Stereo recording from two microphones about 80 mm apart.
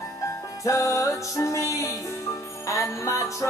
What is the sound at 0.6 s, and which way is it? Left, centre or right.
Music, left.